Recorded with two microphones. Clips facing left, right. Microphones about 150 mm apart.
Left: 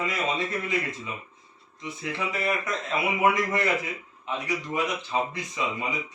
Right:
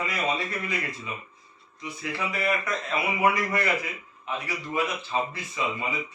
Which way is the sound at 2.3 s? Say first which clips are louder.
Right 1 dB; 20° left (ahead or behind).